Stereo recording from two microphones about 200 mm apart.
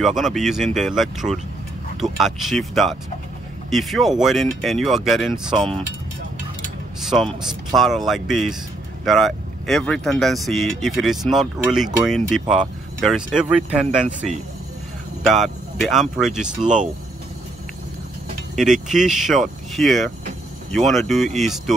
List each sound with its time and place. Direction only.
0.0 s speech: centre (ahead or behind)
7.0 s speech: centre (ahead or behind)
16.6 s speech: 40° right (ahead or behind)
18.6 s speech: centre (ahead or behind)